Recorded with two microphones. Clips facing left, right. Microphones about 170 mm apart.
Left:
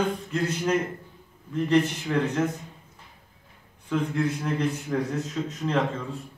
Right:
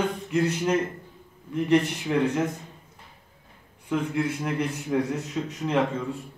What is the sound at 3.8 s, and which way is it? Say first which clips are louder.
A man's voice: even; 10° right (ahead or behind).